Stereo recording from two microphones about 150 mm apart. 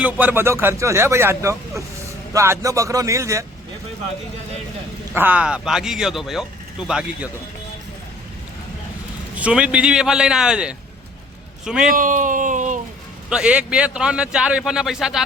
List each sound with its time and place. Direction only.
0.0 s a man's voice: 10° right (ahead or behind)
5.1 s speech: 10° right (ahead or behind)
9.3 s a man's voice: 10° right (ahead or behind)
11.9 s speech: 60° right (ahead or behind)
13.3 s a man's voice: 5° right (ahead or behind)